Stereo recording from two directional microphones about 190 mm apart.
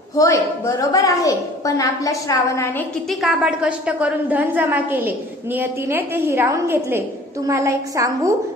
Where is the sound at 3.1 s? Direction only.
5° right (ahead or behind).